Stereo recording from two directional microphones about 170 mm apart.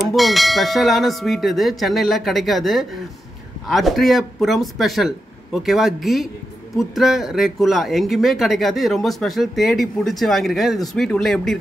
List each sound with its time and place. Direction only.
0.1 s speech: centre (ahead or behind)